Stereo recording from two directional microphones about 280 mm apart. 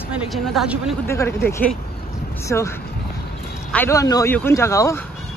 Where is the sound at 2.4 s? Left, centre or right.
Centre.